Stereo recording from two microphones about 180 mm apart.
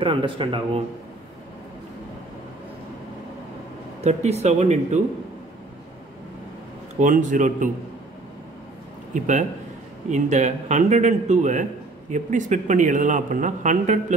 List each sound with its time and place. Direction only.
0.0 s speech: 30° right (ahead or behind)
4.0 s a man's voice: 35° right (ahead or behind)
7.0 s a man's voice: 45° right (ahead or behind)
9.1 s a man's voice: 45° right (ahead or behind)